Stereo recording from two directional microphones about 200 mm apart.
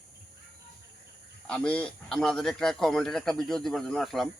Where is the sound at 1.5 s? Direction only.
5° left (ahead or behind).